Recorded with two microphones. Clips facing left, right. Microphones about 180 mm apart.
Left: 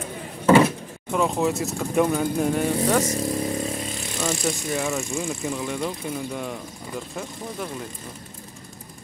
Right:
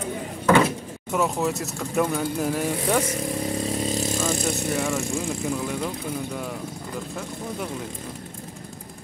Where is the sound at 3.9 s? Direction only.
35° right (ahead or behind).